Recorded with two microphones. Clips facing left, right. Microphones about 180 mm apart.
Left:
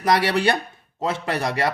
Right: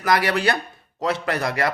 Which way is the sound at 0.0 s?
30° left (ahead or behind).